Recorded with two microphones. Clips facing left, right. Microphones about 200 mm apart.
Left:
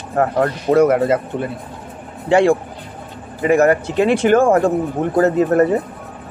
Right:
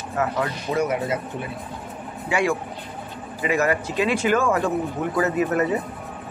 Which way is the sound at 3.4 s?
50° left (ahead or behind).